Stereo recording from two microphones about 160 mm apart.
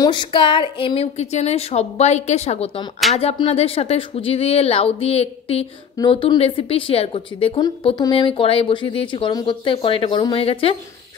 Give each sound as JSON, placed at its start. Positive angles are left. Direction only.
{"t": 0.0, "sound": "speech", "side_deg": 30}